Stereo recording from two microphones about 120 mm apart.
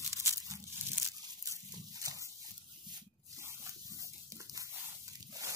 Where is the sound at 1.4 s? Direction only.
30° right (ahead or behind).